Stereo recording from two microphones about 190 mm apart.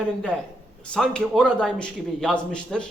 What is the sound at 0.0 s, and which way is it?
A man's voice, 5° left (ahead or behind).